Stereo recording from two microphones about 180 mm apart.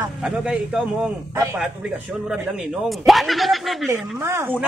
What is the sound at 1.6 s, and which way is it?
A man's voice, 5° right (ahead or behind).